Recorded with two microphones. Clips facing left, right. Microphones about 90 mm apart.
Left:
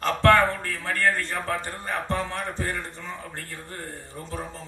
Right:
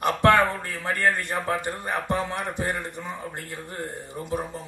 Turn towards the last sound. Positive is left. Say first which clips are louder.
# right 5 dB
turn(degrees=-15)  # may be behind; listen again after turning